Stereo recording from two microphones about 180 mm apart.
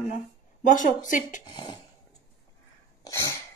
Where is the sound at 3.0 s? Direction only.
15° left (ahead or behind).